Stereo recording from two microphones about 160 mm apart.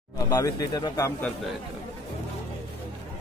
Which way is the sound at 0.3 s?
20° left (ahead or behind).